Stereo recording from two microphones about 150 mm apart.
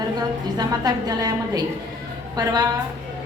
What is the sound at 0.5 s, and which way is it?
A woman's voice, 25° right (ahead or behind).